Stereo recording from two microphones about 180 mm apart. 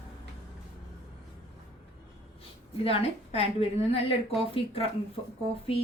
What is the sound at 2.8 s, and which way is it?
A woman's voice, 35° left (ahead or behind).